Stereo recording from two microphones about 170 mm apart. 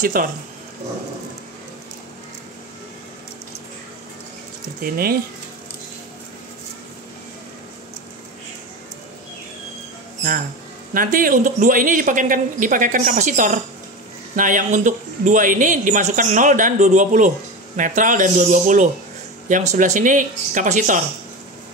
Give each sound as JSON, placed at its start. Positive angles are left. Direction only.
{"t": 0.0, "sound": "speech", "side_deg": -55}
{"t": 4.9, "sound": "speech", "side_deg": -60}
{"t": 10.9, "sound": "speech", "side_deg": -55}